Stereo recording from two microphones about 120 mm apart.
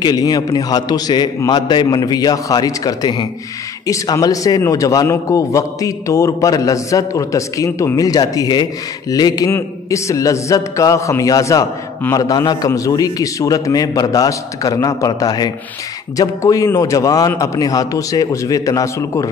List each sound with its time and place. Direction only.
0.0 s a man's voice: 30° left (ahead or behind)